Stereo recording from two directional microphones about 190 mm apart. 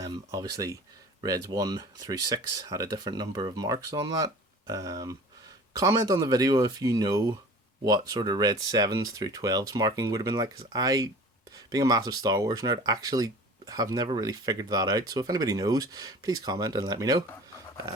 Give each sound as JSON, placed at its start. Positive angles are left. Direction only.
{"t": 0.0, "sound": "speech", "side_deg": -15}